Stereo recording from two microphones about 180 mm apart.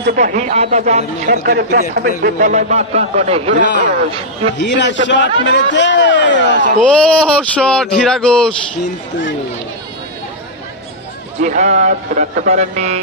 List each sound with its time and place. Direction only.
0.0 s a man's voice: 55° right (ahead or behind)
1.3 s a man's voice: 55° right (ahead or behind); by 3.6 s 35° right (ahead or behind)
4.6 s a man's voice: 75° left (ahead or behind)
6.8 s speech: 5° left (ahead or behind)
11.4 s speech: 40° right (ahead or behind)